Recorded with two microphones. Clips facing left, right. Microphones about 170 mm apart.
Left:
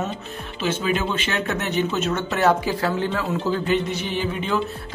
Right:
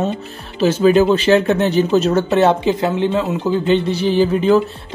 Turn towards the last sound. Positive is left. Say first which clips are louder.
# right 12 dB
turn(degrees=-35)  # may be behind; listen again after turning